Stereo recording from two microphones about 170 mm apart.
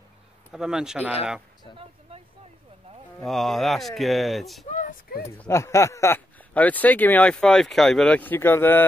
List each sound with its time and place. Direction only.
0.5 s speech: 5° right (ahead or behind)
1.8 s speech: 35° right (ahead or behind)
3.2 s speech: centre (ahead or behind)
4.6 s a sound: 50° left (ahead or behind)
5.4 s speech: 15° left (ahead or behind)